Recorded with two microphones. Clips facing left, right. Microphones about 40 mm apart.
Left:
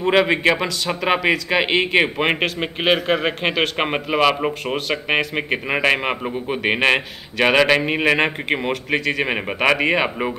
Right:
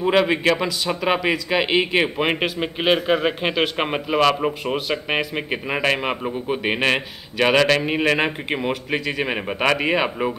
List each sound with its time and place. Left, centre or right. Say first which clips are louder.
0.1 s a man's voice: left 2 dB; centre